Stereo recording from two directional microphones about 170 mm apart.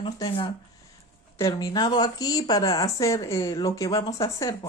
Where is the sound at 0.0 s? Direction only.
30° left (ahead or behind).